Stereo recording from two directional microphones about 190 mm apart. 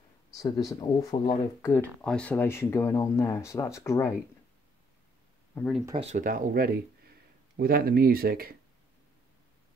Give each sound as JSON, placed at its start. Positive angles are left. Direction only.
{"t": 0.4, "sound": "speech", "side_deg": 20}
{"t": 5.5, "sound": "speech", "side_deg": 5}
{"t": 5.9, "sound": "speech", "side_deg": -40}